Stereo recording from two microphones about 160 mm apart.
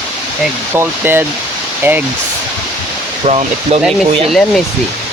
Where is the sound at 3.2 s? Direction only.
40° right (ahead or behind).